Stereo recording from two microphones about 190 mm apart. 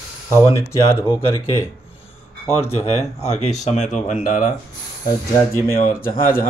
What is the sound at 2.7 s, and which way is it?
Speech, 30° left (ahead or behind).